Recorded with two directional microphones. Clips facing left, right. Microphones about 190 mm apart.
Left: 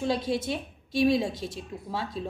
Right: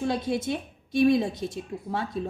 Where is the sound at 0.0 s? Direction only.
55° right (ahead or behind).